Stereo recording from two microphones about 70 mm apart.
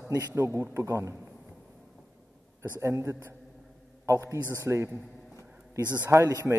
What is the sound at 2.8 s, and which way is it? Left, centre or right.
A man's voice, right.